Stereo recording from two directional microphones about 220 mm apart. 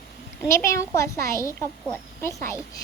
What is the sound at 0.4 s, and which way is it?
Speech, 15° left (ahead or behind).